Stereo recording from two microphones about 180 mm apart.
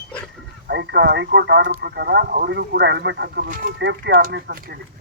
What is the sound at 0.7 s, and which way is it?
Speech, 70° right (ahead or behind).